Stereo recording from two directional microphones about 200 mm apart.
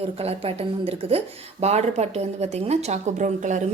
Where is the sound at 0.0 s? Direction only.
30° right (ahead or behind).